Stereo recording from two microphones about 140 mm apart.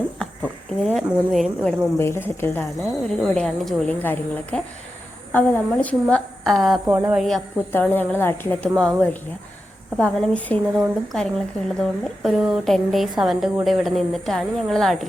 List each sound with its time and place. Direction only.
0.2 s a sound: 5° left (ahead or behind)
2.0 s a woman's voice: 20° left (ahead or behind)
2.8 s a woman's voice: centre (ahead or behind)
4.0 s a woman's voice: 15° left (ahead or behind)
6.8 s speech: 15° right (ahead or behind)
7.2 s a woman's voice: centre (ahead or behind)
7.7 s a woman's voice: 15° left (ahead or behind)